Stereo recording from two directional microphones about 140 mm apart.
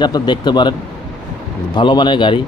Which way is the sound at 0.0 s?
30° left (ahead or behind).